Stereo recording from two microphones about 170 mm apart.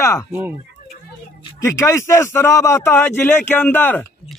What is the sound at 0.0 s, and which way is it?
Speech, 20° left (ahead or behind).